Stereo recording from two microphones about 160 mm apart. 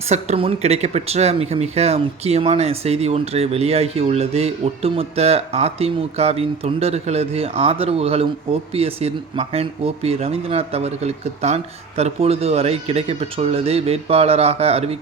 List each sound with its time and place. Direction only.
0.1 s speech: 40° right (ahead or behind)